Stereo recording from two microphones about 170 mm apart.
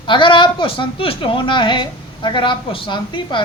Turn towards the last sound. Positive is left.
turn(degrees=30)  # may be behind; listen again after turning